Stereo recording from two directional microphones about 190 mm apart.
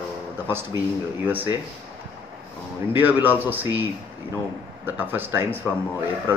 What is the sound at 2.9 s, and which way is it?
Speech, 10° right (ahead or behind).